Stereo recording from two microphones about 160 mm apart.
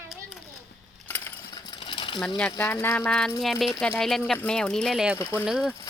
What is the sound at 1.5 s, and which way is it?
Sewing machine, 30° left (ahead or behind).